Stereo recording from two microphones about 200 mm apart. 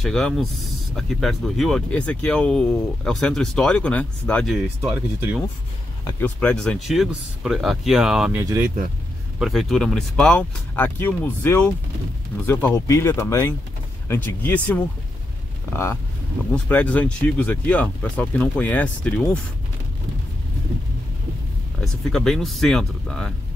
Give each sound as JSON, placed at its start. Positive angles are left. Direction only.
{"t": 0.0, "sound": "speech", "side_deg": 0}
{"t": 6.0, "sound": "speech", "side_deg": 10}
{"t": 8.4, "sound": "speech", "side_deg": -15}
{"t": 9.4, "sound": "speech", "side_deg": 0}
{"t": 21.8, "sound": "speech", "side_deg": 0}